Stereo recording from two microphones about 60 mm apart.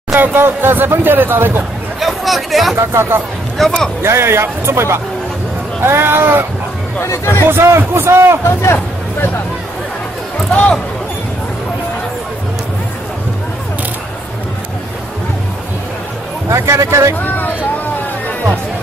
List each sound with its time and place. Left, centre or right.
0.1 s speech: right
2.0 s a sound: centre
2.7 s speech: right
3.6 s speech: centre
4.0 s speech: right
7.0 s speech: left
7.4 s speech: right
10.5 s speech: left
16.4 s speech: right